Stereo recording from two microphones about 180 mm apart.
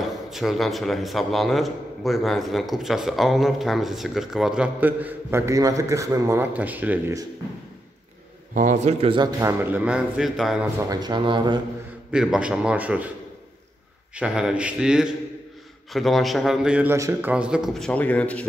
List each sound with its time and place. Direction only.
0.0 s a man's voice: centre (ahead or behind)
8.5 s a man's voice: 40° right (ahead or behind)
9.4 s a man's voice: 15° right (ahead or behind)
10.8 s speech: 20° right (ahead or behind)
12.1 s a man's voice: 5° right (ahead or behind)
14.1 s a man's voice: 5° right (ahead or behind)